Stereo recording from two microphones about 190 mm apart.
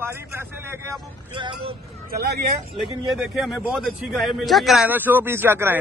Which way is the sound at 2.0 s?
60° right (ahead or behind).